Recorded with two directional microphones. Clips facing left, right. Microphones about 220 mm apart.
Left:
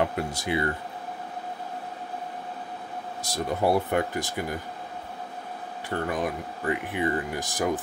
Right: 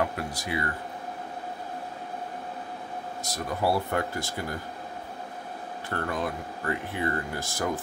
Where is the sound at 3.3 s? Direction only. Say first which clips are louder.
Left 3 dB; 20° left (ahead or behind).